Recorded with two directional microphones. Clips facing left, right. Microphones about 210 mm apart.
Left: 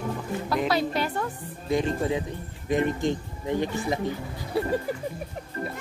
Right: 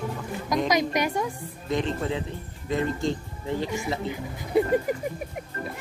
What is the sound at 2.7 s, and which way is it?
Speech, 20° left (ahead or behind).